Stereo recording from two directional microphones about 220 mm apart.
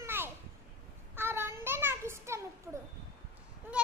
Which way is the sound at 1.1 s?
10° right (ahead or behind).